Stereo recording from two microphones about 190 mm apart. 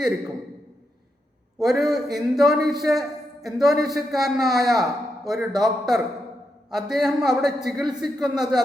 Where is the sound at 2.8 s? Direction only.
Centre (ahead or behind).